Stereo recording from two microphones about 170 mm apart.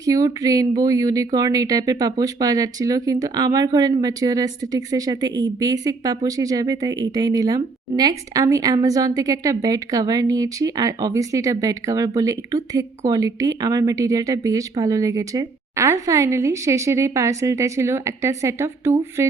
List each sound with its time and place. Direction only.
0.0 s a woman's voice: 20° right (ahead or behind)